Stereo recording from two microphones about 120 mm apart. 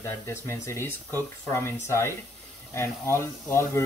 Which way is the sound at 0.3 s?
20° left (ahead or behind).